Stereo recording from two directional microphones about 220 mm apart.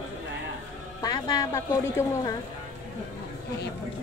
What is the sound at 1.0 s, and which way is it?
Music, 20° left (ahead or behind).